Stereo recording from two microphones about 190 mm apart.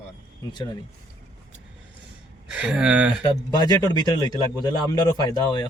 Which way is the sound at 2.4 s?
5° right (ahead or behind).